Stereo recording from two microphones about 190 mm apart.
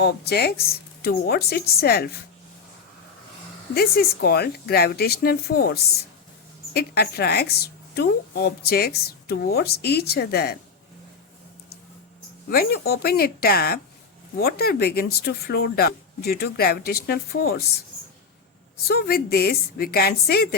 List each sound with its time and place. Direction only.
0.0 s speech: 60° left (ahead or behind)
3.8 s speech: 55° left (ahead or behind)
12.5 s a woman's voice: 55° left (ahead or behind)
18.9 s speech: 55° left (ahead or behind)